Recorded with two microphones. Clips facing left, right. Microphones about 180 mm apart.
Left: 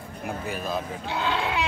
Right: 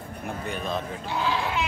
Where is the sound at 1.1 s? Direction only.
65° left (ahead or behind).